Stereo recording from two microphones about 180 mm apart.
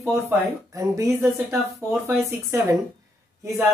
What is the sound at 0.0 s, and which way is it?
Speech, 15° right (ahead or behind).